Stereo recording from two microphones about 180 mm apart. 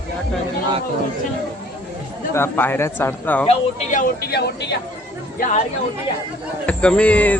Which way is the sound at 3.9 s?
60° left (ahead or behind).